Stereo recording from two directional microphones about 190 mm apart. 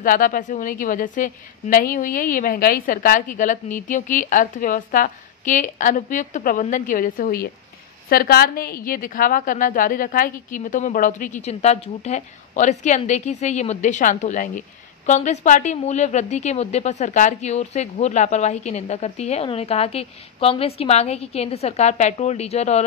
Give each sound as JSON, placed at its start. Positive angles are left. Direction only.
{"t": 0.0, "sound": "a woman's voice", "side_deg": 45}